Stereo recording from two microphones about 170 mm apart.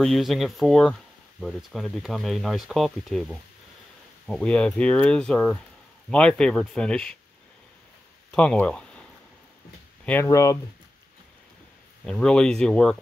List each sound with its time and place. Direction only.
0.0 s speech: centre (ahead or behind)
8.3 s speech: 5° left (ahead or behind)
10.0 s speech: 15° left (ahead or behind)
12.1 s speech: 5° left (ahead or behind)